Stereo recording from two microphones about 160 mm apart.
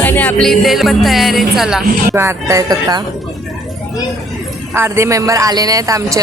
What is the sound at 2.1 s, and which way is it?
Speech, 15° right (ahead or behind).